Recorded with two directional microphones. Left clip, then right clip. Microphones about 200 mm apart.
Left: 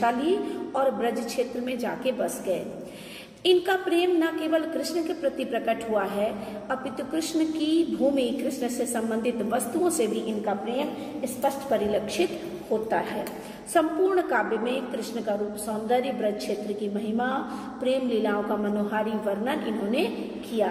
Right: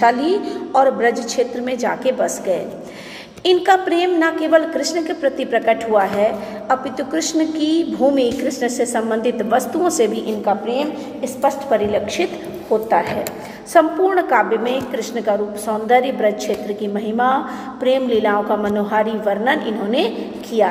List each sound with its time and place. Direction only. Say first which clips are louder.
0.0 s a woman's voice: right 9 dB; 10° right (ahead or behind)
10.4 s a woman's voice: right 12 dB; 20° right (ahead or behind)
11.4 s a woman's voice: right 9 dB; 5° right (ahead or behind)
13.7 s a woman's voice: right 9 dB; 5° right (ahead or behind)